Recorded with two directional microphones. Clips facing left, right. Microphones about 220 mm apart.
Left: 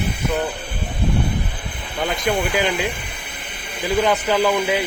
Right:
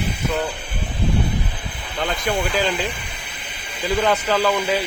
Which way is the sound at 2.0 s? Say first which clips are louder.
Left 2 dB; 10° left (ahead or behind).